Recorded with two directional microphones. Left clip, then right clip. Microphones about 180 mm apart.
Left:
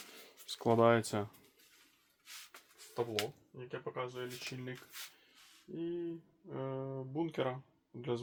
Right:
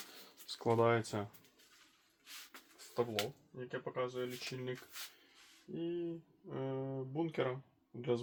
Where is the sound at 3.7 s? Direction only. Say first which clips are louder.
Right 1 dB; 30° left (ahead or behind).